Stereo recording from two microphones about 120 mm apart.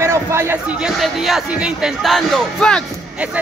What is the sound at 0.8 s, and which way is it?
Speech, centre (ahead or behind).